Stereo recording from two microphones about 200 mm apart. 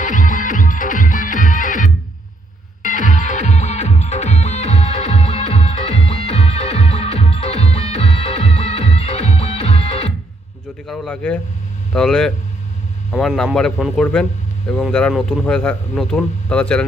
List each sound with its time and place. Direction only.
0.0 s music: 40° left (ahead or behind)
10.8 s a sound: 5° left (ahead or behind)
11.9 s a man's voice: 5° left (ahead or behind)